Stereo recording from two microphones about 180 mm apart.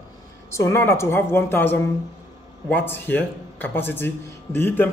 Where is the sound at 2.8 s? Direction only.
10° left (ahead or behind).